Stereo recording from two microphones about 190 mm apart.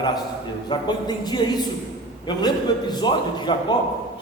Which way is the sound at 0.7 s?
20° left (ahead or behind).